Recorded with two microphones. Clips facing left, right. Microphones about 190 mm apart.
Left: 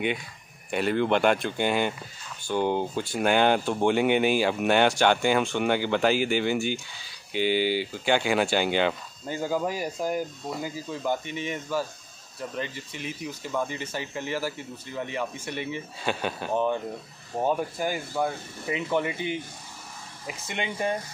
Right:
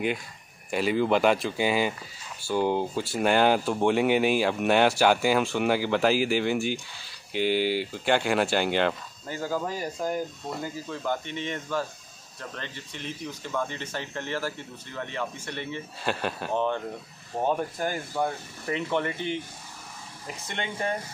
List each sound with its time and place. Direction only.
0.7 s speech: centre (ahead or behind)
9.3 s speech: 15° left (ahead or behind)
16.0 s speech: centre (ahead or behind)
16.5 s speech: 10° left (ahead or behind)
20.4 s speech: 10° left (ahead or behind)